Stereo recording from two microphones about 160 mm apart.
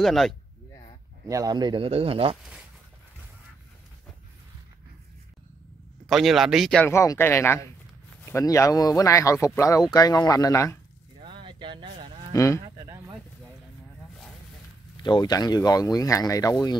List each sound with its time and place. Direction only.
0.0 s speech: centre (ahead or behind)
1.2 s a man's voice: 20° right (ahead or behind); by 2.3 s 35° right (ahead or behind)
6.0 s speech: centre (ahead or behind)
6.9 s speech: 15° left (ahead or behind)
11.2 s a sound: 30° right (ahead or behind)
12.3 s speech: 20° left (ahead or behind)
15.0 s speech: 25° left (ahead or behind)